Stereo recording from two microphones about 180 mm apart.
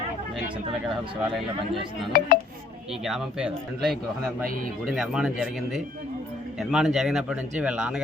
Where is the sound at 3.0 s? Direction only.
Centre (ahead or behind).